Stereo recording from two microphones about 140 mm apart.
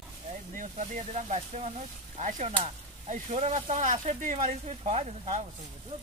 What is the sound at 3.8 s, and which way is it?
Speech, 65° right (ahead or behind).